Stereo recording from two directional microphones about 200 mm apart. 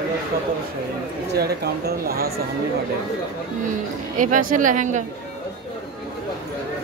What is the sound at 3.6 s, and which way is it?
Speech, 40° right (ahead or behind).